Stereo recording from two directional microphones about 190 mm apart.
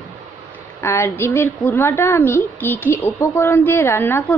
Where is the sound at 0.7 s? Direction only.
15° left (ahead or behind).